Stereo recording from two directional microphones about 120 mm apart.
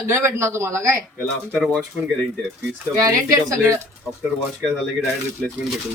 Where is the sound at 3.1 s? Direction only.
30° right (ahead or behind).